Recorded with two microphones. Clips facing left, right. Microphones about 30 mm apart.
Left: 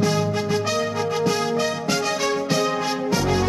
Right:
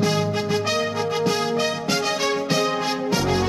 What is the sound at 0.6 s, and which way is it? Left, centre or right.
Music, right.